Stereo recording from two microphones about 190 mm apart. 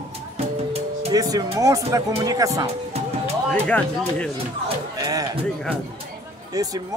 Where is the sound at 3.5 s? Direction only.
5° left (ahead or behind).